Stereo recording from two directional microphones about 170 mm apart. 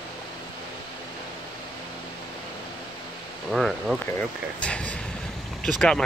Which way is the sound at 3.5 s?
Centre (ahead or behind).